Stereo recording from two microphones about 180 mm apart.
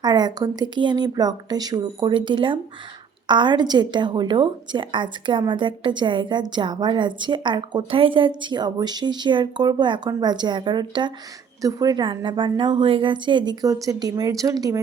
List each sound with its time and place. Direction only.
0.0 s a woman's voice: 25° right (ahead or behind)